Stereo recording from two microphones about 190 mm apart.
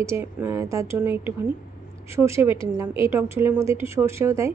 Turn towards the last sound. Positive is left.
turn(degrees=-15)  # may be behind; listen again after turning